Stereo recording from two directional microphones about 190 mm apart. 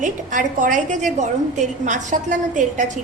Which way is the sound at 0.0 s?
45° right (ahead or behind).